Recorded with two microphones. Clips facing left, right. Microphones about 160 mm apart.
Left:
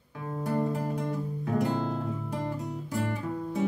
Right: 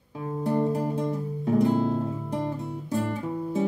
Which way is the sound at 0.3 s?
20° right (ahead or behind).